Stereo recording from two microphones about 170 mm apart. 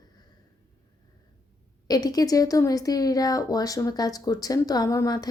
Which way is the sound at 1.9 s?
20° left (ahead or behind).